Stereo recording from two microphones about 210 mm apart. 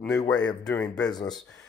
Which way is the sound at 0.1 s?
20° left (ahead or behind).